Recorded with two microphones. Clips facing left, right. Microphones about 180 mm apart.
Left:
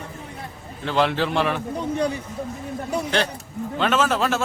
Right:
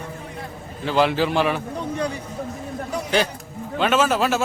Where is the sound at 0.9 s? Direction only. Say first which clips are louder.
Right 2 dB; 5° right (ahead or behind).